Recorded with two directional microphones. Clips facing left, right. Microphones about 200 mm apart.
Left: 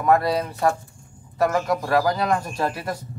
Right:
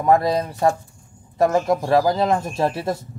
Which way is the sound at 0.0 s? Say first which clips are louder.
Right 2 dB; 30° right (ahead or behind).